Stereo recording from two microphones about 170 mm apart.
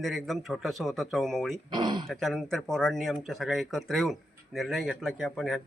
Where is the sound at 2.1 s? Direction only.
Centre (ahead or behind).